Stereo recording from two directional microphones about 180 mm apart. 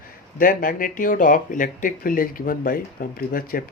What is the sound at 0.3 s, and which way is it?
Speech, 50° left (ahead or behind).